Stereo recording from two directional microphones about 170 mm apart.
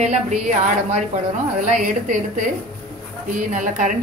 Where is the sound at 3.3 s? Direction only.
50° right (ahead or behind).